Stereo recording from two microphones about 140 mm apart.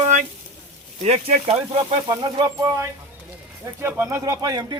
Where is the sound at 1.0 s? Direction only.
55° right (ahead or behind).